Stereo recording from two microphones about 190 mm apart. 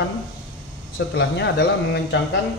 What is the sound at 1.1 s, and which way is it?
A man's voice, 65° left (ahead or behind).